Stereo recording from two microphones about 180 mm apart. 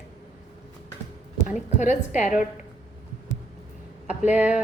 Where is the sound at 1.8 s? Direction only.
10° right (ahead or behind).